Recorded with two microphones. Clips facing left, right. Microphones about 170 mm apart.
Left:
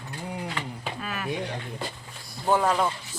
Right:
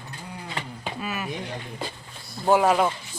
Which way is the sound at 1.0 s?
5° right (ahead or behind).